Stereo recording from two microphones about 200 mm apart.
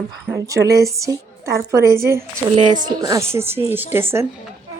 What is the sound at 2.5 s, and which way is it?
Speech, 40° right (ahead or behind).